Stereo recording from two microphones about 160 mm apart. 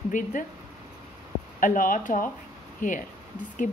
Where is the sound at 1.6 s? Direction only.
55° left (ahead or behind).